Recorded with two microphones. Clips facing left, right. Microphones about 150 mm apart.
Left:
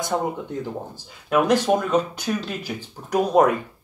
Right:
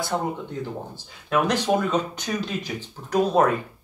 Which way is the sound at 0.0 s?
15° left (ahead or behind).